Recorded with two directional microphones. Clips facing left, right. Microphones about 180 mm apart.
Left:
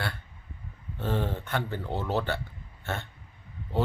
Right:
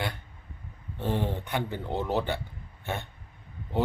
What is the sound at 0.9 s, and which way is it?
Speech, 15° right (ahead or behind).